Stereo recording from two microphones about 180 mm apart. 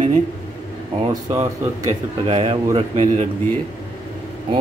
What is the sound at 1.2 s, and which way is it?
Speech, 20° right (ahead or behind).